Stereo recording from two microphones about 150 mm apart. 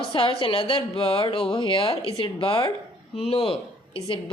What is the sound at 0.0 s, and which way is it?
A woman's voice, 35° left (ahead or behind).